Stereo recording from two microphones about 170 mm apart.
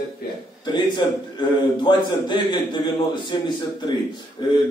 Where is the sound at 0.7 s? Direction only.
25° left (ahead or behind).